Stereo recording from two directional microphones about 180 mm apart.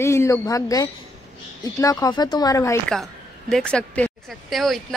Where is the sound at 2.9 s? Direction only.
Centre (ahead or behind).